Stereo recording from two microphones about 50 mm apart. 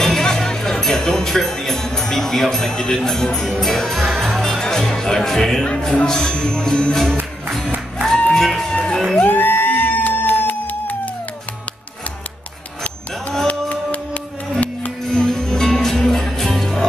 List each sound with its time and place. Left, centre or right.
0.0 s speech: centre
5.9 s music: centre
8.3 s music: centre
9.2 s music: left
13.5 s music: left
15.0 s music: centre